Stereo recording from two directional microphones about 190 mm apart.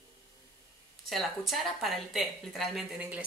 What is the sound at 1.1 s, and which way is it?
A woman's voice, centre (ahead or behind).